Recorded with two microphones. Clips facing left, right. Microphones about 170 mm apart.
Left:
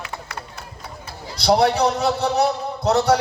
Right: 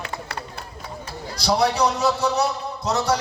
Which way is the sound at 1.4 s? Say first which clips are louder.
Left 3 dB; 60° left (ahead or behind).